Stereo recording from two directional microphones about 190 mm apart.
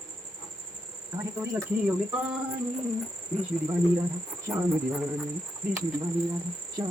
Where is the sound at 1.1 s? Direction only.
20° right (ahead or behind).